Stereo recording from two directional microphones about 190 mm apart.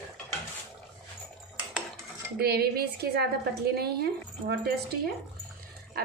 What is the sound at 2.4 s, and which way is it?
A woman's voice, 55° right (ahead or behind).